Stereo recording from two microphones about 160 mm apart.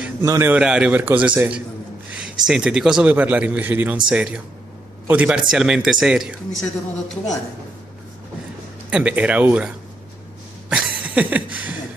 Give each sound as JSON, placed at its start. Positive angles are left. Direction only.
{"t": 0.0, "sound": "a man's voice", "side_deg": -15}
{"t": 8.9, "sound": "a man's voice", "side_deg": -10}
{"t": 10.7, "sound": "a sound", "side_deg": -10}